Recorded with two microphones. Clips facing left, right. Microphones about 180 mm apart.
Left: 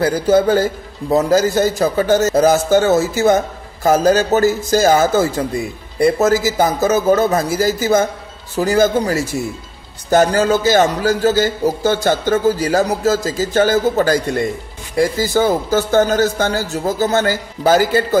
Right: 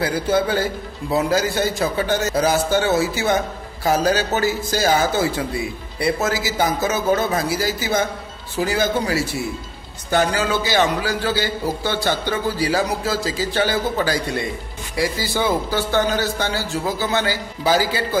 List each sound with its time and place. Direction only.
0.0 s a man's voice: 45° left (ahead or behind)